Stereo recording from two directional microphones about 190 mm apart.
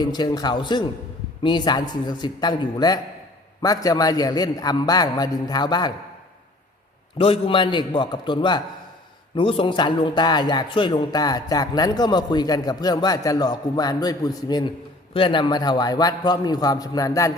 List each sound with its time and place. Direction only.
0.0 s speech: 20° left (ahead or behind)
7.2 s speech: 30° left (ahead or behind)